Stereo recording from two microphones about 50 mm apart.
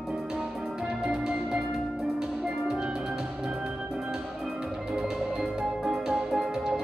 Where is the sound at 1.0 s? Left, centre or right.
Centre.